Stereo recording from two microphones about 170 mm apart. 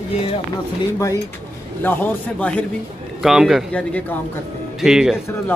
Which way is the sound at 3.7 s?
10° left (ahead or behind).